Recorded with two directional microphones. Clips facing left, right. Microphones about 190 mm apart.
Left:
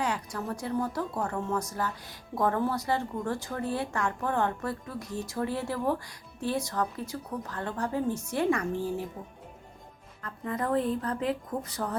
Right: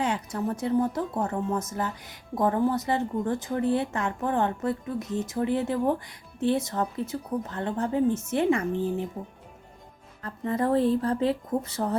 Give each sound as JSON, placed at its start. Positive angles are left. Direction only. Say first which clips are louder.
{"t": 0.0, "sound": "speech", "louder": "right 4 dB", "side_deg": -25}
{"t": 10.2, "sound": "speech", "louder": "right 5 dB", "side_deg": -30}